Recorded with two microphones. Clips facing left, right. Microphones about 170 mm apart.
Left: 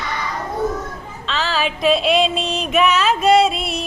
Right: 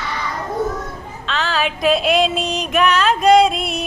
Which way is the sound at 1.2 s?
Centre (ahead or behind).